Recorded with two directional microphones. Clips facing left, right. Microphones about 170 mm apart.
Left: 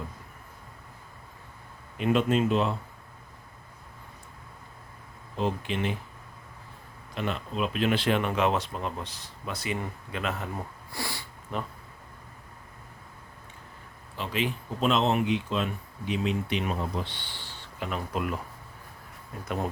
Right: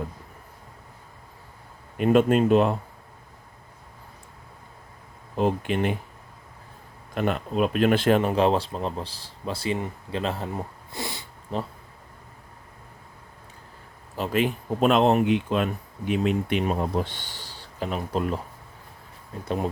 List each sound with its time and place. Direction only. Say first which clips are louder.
2.0 s speech: right 5 dB; 50° right (ahead or behind)
5.4 s speech: right 5 dB; 50° right (ahead or behind)
7.1 s speech: right 6 dB; 50° right (ahead or behind); by 10.5 s 30° right (ahead or behind)
10.9 s a sound: right 2 dB; 20° right (ahead or behind)
11.5 s speech: right 4 dB; 30° right (ahead or behind)
14.2 s speech: right 6 dB; 50° right (ahead or behind)
16.6 s speech: right 6 dB; 40° right (ahead or behind)